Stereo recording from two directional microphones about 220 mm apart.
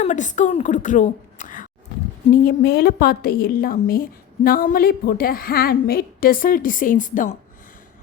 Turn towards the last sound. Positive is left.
turn(degrees=35)  # may be behind; listen again after turning